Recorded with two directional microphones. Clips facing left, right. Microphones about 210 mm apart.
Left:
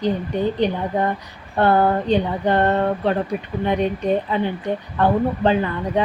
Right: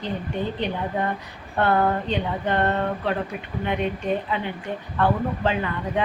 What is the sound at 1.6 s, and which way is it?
A woman's voice, 35° left (ahead or behind).